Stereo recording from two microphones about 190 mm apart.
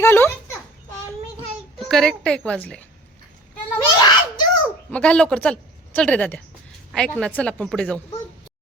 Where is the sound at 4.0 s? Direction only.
20° left (ahead or behind).